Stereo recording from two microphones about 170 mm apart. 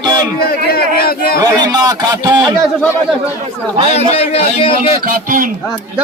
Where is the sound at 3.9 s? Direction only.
40° left (ahead or behind).